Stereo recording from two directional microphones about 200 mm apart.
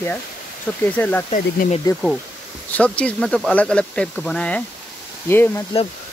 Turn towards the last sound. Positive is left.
turn(degrees=10)  # may be behind; listen again after turning